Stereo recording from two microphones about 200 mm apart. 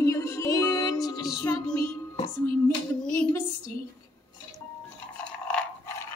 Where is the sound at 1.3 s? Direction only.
15° left (ahead or behind).